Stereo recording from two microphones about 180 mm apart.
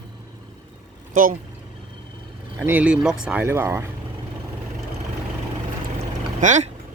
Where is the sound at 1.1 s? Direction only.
50° right (ahead or behind).